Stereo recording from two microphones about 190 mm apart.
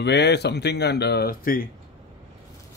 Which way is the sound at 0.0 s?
65° left (ahead or behind).